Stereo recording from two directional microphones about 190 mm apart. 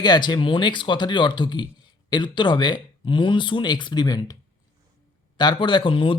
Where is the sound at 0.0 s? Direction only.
20° left (ahead or behind).